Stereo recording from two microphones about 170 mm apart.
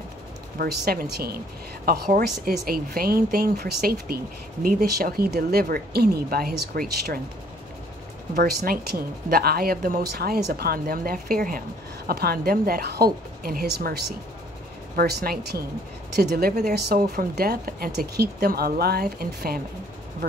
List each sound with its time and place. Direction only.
0.6 s speech: 70° right (ahead or behind)
8.4 s speech: 65° right (ahead or behind)